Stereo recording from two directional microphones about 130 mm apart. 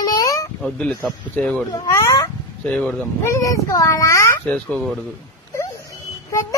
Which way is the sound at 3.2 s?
20° left (ahead or behind).